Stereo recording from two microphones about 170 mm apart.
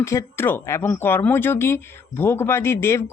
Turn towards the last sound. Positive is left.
turn(degrees=15)  # may be behind; listen again after turning